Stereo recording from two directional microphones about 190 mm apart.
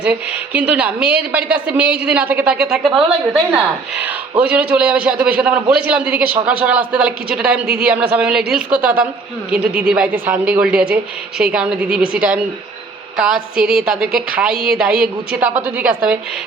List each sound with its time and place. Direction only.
0.0 s a woman's voice: 5° right (ahead or behind)